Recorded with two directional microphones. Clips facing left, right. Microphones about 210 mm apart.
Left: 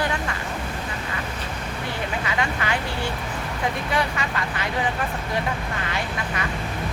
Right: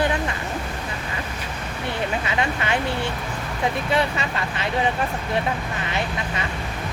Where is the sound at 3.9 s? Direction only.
25° right (ahead or behind).